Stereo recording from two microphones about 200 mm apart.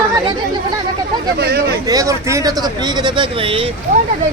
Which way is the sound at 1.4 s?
55° right (ahead or behind).